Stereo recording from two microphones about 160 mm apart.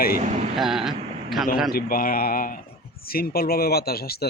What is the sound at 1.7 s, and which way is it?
Speech, 65° left (ahead or behind).